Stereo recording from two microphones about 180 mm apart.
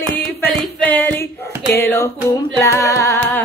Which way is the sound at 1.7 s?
15° left (ahead or behind).